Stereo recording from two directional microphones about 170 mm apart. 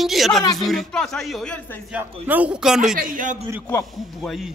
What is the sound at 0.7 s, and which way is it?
Speech, centre (ahead or behind).